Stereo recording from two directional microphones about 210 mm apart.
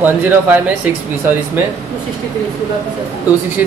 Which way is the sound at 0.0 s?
10° right (ahead or behind).